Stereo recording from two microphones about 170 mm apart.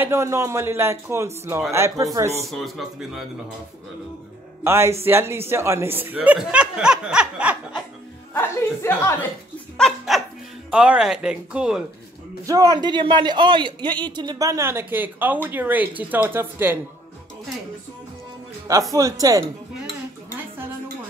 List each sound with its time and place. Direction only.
0.0 s speech: 15° right (ahead or behind)
2.5 s speech: centre (ahead or behind)
4.6 s speech: 15° right (ahead or behind)
8.3 s speech: 15° left (ahead or behind)
9.8 s speech: centre (ahead or behind)
12.4 s a man's voice: 20° right (ahead or behind)
18.7 s a man's voice: 20° right (ahead or behind)